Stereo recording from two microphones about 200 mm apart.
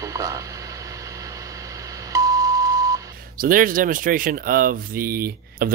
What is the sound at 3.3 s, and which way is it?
Speech, 45° right (ahead or behind).